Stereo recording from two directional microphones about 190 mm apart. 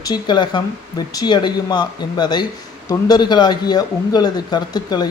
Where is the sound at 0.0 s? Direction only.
25° left (ahead or behind).